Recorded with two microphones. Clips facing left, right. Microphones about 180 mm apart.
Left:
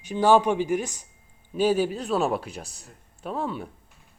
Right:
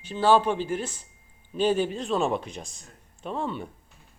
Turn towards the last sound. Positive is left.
turn(degrees=5)  # may be behind; listen again after turning